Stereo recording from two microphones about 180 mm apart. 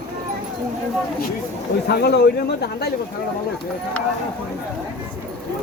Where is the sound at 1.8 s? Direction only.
65° left (ahead or behind).